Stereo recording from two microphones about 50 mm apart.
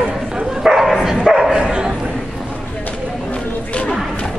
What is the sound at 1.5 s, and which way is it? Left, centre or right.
Dog, centre.